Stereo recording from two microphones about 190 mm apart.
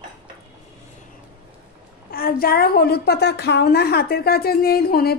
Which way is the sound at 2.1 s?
50° left (ahead or behind).